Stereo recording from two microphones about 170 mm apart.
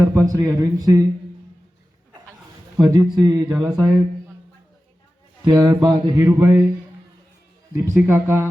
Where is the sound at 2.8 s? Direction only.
25° right (ahead or behind).